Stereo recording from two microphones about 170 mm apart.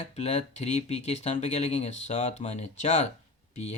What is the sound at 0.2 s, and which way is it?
Speech, 45° left (ahead or behind).